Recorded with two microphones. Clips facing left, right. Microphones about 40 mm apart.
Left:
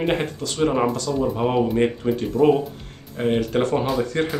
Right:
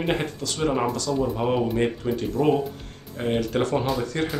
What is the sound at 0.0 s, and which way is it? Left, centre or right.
Speech, centre.